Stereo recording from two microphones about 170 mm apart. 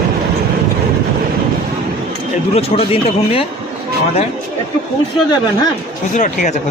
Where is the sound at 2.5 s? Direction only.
35° left (ahead or behind).